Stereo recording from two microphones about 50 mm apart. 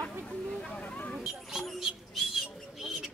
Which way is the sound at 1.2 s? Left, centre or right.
Centre.